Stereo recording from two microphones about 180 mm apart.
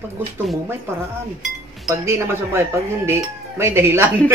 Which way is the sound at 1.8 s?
15° right (ahead or behind).